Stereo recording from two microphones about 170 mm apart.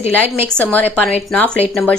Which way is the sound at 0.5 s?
5° left (ahead or behind).